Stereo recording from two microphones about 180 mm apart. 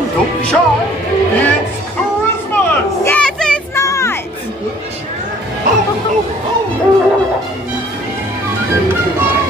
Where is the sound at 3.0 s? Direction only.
5° left (ahead or behind).